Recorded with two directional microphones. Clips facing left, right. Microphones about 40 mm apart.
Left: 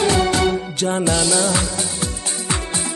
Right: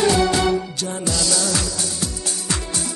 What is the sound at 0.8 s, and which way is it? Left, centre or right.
Music, left.